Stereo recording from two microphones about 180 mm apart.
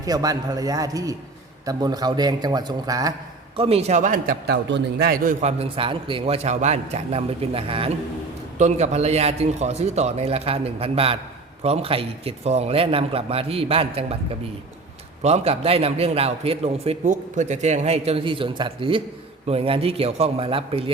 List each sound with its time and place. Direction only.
0.0 s a man's voice: 20° right (ahead or behind)
3.6 s a man's voice: 35° right (ahead or behind); by 4.5 s 50° right (ahead or behind)
4.5 s a man's voice: 70° right (ahead or behind); by 14.2 s 30° right (ahead or behind)
15.2 s a man's voice: 35° right (ahead or behind)